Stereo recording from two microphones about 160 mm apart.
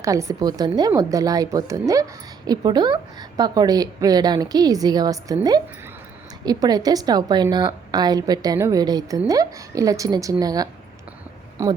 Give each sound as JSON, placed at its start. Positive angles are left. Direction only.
{"t": 0.0, "sound": "a woman's voice", "side_deg": -20}